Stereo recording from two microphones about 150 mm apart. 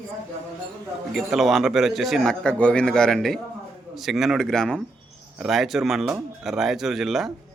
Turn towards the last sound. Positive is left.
turn(degrees=0)  # may be behind; listen again after turning